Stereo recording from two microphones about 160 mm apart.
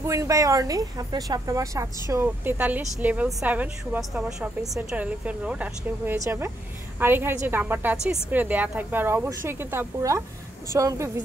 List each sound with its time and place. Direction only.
0.0 s speech: 20° right (ahead or behind)
6.1 s speech: 20° right (ahead or behind)